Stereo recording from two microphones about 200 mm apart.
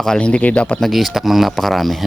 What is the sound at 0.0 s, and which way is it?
Speech, 5° left (ahead or behind).